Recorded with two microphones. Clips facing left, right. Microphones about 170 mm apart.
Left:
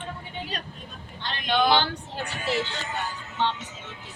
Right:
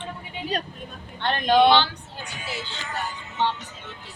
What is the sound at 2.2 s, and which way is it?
Speech, 70° left (ahead or behind).